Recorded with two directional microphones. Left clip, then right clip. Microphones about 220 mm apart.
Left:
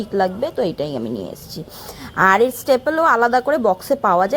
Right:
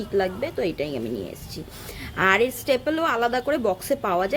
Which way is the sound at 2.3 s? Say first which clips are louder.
Left 5 dB; 15° left (ahead or behind).